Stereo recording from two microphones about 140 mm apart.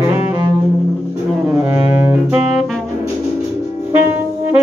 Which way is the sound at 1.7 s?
15° right (ahead or behind).